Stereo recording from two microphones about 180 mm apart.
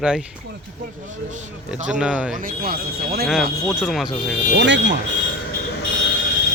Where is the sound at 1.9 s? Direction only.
5° right (ahead or behind).